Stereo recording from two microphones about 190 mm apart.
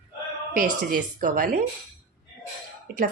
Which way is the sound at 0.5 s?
45° right (ahead or behind).